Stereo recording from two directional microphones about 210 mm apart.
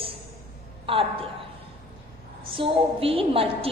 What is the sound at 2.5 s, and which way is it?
A woman's voice, 25° right (ahead or behind).